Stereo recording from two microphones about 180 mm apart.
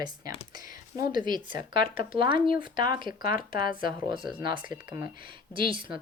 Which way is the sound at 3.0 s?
50° left (ahead or behind).